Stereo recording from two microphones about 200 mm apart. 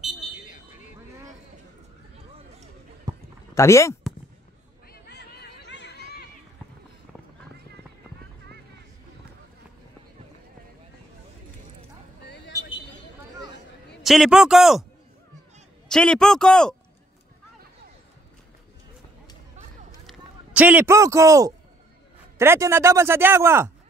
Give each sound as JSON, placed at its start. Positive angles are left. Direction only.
{"t": 3.1, "sound": "a sound", "side_deg": -20}
{"t": 3.5, "sound": "speech", "side_deg": 15}
{"t": 4.9, "sound": "chatter", "side_deg": 50}
{"t": 12.3, "sound": "vehicle", "side_deg": 60}
{"t": 14.0, "sound": "a man's voice", "side_deg": 0}
{"t": 15.9, "sound": "a man's voice", "side_deg": 5}
{"t": 20.1, "sound": "a man's voice", "side_deg": -5}